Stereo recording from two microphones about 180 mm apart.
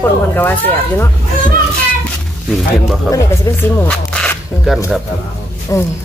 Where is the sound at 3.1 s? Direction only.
15° left (ahead or behind).